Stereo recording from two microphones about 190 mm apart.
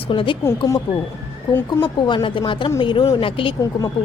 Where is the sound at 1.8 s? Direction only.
25° left (ahead or behind).